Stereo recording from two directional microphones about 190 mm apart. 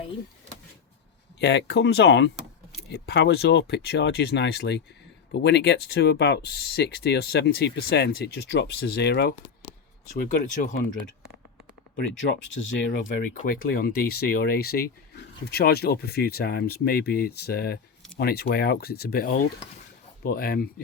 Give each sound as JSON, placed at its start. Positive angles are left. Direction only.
{"t": 1.4, "sound": "speech", "side_deg": 65}
{"t": 10.2, "sound": "speech", "side_deg": 45}
{"t": 13.2, "sound": "speech", "side_deg": 45}